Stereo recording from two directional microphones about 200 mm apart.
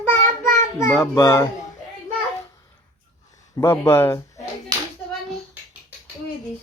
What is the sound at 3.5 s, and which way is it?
Speech, 15° left (ahead or behind).